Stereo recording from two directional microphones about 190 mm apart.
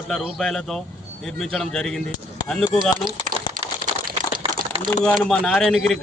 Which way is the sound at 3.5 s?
50° right (ahead or behind).